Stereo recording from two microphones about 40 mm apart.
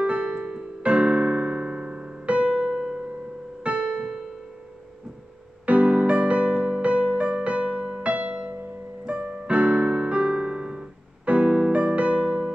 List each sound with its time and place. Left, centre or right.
0.0 s keyboard: right
2.2 s piano: right
3.6 s keyboard: right
5.7 s music: right
9.0 s piano: right
12.3 s electric piano: centre